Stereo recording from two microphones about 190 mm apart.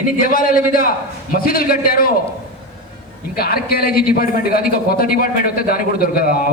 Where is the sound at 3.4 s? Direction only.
55° left (ahead or behind).